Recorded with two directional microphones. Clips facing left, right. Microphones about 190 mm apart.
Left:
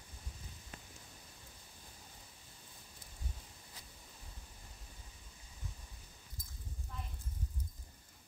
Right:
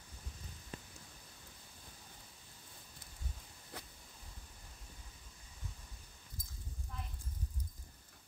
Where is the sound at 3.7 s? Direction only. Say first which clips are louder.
Right 11 dB; 60° right (ahead or behind).